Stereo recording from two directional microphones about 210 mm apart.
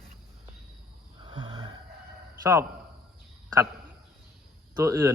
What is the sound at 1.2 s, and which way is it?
Snoring, 25° right (ahead or behind).